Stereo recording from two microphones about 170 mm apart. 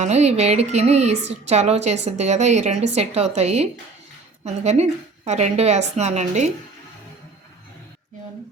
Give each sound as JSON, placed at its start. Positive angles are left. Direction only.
{"t": 0.0, "sound": "a woman's voice", "side_deg": -40}